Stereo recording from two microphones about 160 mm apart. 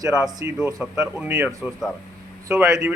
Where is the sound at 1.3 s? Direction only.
20° right (ahead or behind).